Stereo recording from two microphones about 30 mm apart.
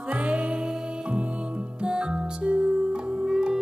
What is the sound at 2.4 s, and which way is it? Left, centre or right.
Music, right.